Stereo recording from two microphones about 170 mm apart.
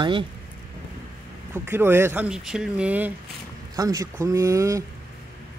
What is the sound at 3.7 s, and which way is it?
Speech, 20° right (ahead or behind).